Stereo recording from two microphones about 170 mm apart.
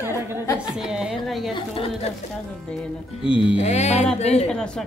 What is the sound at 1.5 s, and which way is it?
Speech, 35° left (ahead or behind).